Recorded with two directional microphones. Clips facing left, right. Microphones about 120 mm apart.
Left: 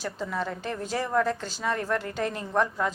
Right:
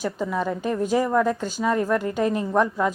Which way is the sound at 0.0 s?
15° right (ahead or behind).